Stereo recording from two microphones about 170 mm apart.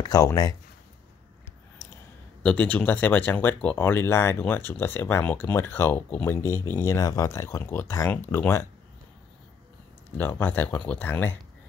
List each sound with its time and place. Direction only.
0.0 s speech: 20° left (ahead or behind)
2.4 s speech: 10° left (ahead or behind)
10.1 s speech: 10° left (ahead or behind)